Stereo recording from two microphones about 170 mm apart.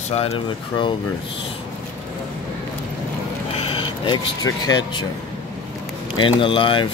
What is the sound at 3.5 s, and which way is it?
Vehicle, 30° left (ahead or behind).